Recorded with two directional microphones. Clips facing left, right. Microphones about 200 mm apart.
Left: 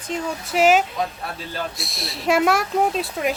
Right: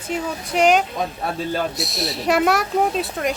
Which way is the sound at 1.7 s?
Centre (ahead or behind).